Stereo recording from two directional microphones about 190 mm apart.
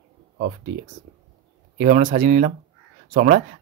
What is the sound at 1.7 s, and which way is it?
Speech, 40° right (ahead or behind).